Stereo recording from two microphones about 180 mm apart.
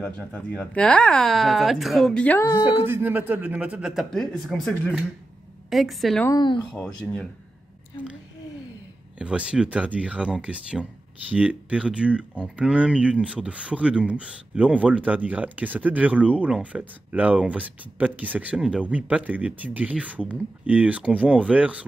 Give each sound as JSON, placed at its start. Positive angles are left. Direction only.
{"t": 0.0, "sound": "speech", "side_deg": 5}
{"t": 2.9, "sound": "speech", "side_deg": -10}
{"t": 6.2, "sound": "speech", "side_deg": 25}
{"t": 6.7, "sound": "speech", "side_deg": 5}
{"t": 9.2, "sound": "speech", "side_deg": -5}